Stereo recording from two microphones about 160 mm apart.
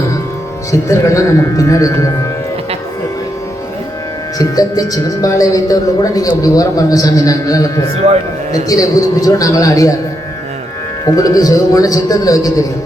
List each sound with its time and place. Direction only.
0.7 s a woman's voice: 20° left (ahead or behind)
4.4 s a woman's voice: 25° left (ahead or behind)
11.0 s a woman's voice: 20° left (ahead or behind)